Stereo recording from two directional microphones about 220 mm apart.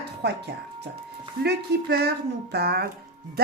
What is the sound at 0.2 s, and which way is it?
Speech, 50° right (ahead or behind).